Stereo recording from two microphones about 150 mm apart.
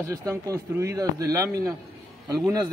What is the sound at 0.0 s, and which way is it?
A man's voice, 20° right (ahead or behind).